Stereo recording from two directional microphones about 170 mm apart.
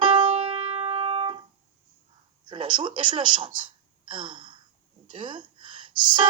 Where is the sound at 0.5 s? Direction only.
40° right (ahead or behind).